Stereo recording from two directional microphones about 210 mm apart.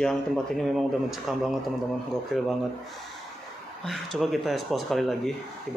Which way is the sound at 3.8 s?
Centre (ahead or behind).